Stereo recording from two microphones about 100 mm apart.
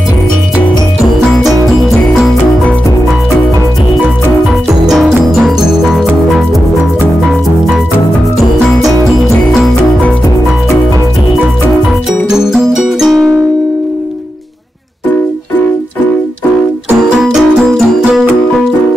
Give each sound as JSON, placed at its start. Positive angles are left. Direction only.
{"t": 4.8, "sound": "music", "side_deg": 0}
{"t": 12.1, "sound": "music", "side_deg": -5}
{"t": 17.2, "sound": "music", "side_deg": -5}